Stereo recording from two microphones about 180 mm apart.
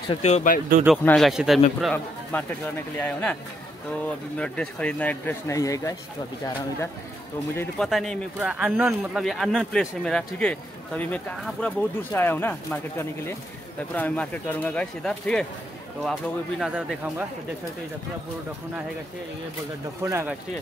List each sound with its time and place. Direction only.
0.1 s speech: 35° left (ahead or behind)
1.0 s speech: centre (ahead or behind); by 5.9 s 20° left (ahead or behind)
7.5 s speech: 5° left (ahead or behind)
20.0 s speech: 15° right (ahead or behind)